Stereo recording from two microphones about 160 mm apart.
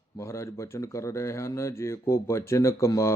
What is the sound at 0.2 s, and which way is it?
Speech, 20° left (ahead or behind).